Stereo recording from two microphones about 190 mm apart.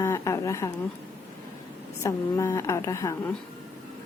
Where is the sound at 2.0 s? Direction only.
15° left (ahead or behind).